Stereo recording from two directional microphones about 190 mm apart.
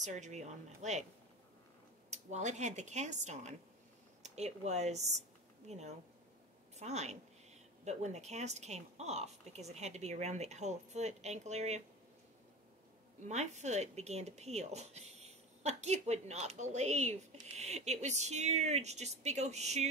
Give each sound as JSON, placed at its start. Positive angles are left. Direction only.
{"t": 0.0, "sound": "speech", "side_deg": -40}
{"t": 2.0, "sound": "speech", "side_deg": -35}
{"t": 13.2, "sound": "speech", "side_deg": -35}